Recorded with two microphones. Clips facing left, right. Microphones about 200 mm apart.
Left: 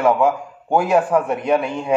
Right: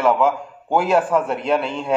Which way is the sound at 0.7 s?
15° left (ahead or behind).